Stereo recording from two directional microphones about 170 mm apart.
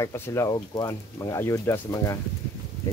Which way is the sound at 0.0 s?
15° left (ahead or behind).